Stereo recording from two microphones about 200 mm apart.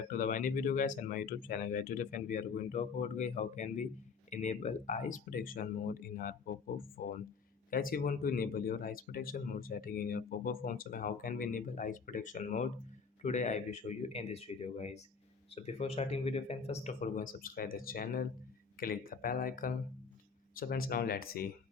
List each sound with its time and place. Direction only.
0.1 s speech: 40° left (ahead or behind)